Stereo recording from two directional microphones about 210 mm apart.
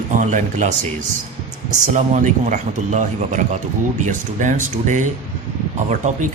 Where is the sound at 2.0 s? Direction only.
35° right (ahead or behind).